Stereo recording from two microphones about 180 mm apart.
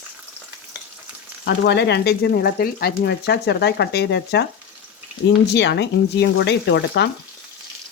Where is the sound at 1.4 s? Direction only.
70° left (ahead or behind).